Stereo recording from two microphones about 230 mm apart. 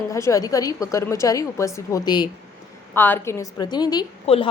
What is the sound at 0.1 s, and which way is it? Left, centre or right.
A woman's voice, centre.